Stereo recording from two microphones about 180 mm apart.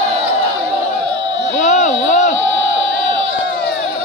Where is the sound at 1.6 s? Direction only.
45° left (ahead or behind).